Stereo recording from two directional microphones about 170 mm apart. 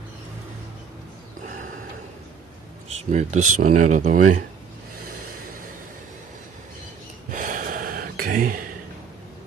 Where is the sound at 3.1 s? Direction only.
45° right (ahead or behind).